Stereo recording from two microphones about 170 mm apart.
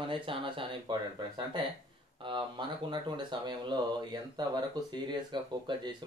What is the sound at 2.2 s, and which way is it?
Speech, 30° right (ahead or behind).